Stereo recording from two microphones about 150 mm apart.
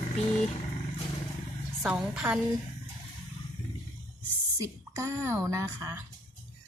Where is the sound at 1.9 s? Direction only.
5° right (ahead or behind).